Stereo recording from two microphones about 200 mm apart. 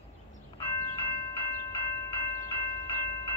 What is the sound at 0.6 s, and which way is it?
Train, 20° left (ahead or behind).